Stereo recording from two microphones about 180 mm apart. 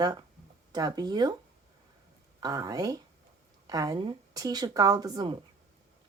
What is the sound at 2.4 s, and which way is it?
Speech, 20° right (ahead or behind).